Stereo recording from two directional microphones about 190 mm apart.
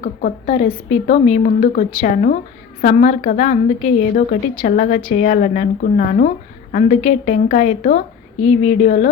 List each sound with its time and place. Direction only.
0.0 s a woman's voice: 45° left (ahead or behind)